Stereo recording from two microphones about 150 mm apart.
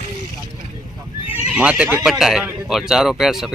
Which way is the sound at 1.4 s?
5° right (ahead or behind).